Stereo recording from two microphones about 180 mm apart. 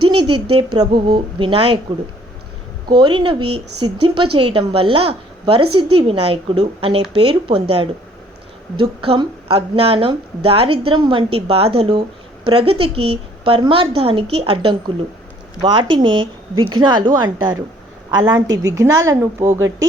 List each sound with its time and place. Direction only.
0.0 s speech: 30° right (ahead or behind)
2.9 s a woman's voice: 25° right (ahead or behind)